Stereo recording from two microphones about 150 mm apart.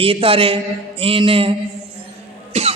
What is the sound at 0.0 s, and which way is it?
A man's voice, 40° right (ahead or behind).